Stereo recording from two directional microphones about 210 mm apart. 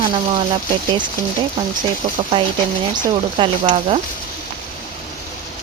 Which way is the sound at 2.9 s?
25° right (ahead or behind).